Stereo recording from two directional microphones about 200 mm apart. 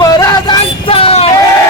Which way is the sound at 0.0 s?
20° left (ahead or behind).